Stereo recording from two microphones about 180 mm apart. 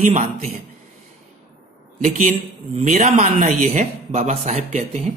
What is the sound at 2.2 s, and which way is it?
A man's voice, 40° right (ahead or behind).